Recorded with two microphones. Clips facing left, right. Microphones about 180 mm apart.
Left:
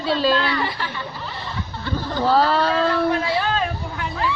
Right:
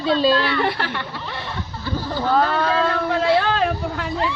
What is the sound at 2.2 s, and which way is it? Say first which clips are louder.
Speech: left 2 dB; 30° left (ahead or behind).